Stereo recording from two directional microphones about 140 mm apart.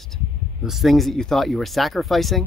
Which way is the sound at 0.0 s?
Centre (ahead or behind).